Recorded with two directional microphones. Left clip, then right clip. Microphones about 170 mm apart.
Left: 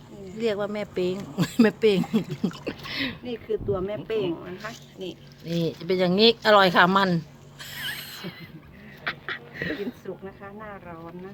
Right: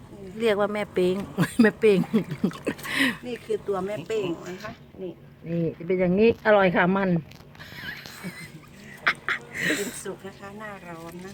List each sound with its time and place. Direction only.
0.3 s speech: 20° right (ahead or behind)
2.6 s speech: 25° right (ahead or behind)
3.2 s speech: 45° left (ahead or behind)
5.9 s speech: 5° right (ahead or behind)
7.6 s a sound: centre (ahead or behind)
9.0 s duck: 20° right (ahead or behind)
9.8 s speech: 45° left (ahead or behind)